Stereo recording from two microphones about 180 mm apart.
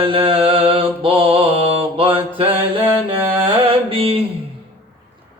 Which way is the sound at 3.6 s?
30° right (ahead or behind).